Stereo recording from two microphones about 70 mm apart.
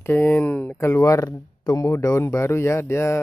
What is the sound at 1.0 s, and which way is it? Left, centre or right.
Speech, left.